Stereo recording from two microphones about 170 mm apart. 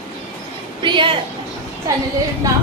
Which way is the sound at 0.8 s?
30° right (ahead or behind).